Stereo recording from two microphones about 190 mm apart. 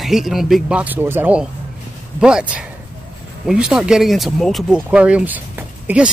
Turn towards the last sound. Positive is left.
turn(degrees=-10)  # may be behind; listen again after turning